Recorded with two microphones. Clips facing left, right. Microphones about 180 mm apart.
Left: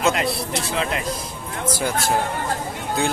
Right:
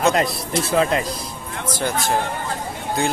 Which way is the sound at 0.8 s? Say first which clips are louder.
Right 5 dB; 35° right (ahead or behind).